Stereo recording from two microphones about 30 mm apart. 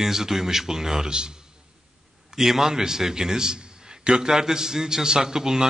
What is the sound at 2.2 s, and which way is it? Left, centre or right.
A man's voice, centre.